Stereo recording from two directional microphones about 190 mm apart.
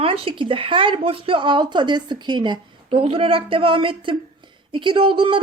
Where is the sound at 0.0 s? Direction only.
30° right (ahead or behind).